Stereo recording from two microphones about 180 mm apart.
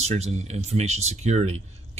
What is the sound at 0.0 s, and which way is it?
Speech, 35° right (ahead or behind).